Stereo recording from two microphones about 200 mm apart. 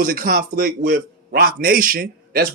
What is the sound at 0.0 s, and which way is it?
A man's voice, 45° right (ahead or behind).